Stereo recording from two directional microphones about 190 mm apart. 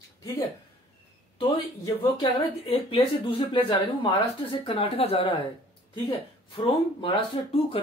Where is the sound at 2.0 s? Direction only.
30° left (ahead or behind).